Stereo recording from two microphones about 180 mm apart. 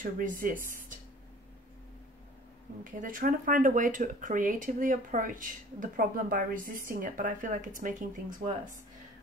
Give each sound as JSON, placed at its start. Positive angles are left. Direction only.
{"t": 0.0, "sound": "speech", "side_deg": -50}
{"t": 2.8, "sound": "speech", "side_deg": -45}